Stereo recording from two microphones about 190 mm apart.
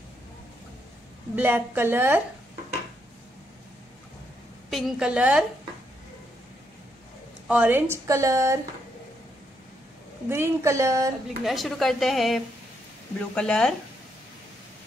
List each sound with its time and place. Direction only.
1.3 s speech: 10° right (ahead or behind)
4.6 s speech: centre (ahead or behind)
7.4 s speech: 10° right (ahead or behind)
10.3 s speech: 15° right (ahead or behind)
11.4 s speech: centre (ahead or behind)